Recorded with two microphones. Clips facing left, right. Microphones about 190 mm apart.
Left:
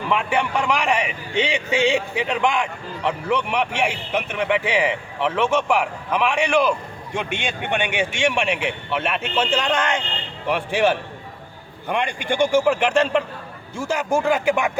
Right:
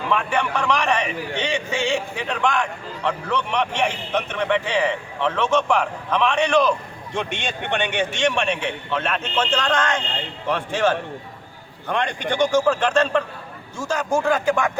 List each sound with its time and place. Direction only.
0.1 s a man's voice: 15° left (ahead or behind)